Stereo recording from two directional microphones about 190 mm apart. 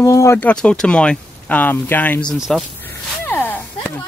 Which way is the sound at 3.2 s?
10° left (ahead or behind).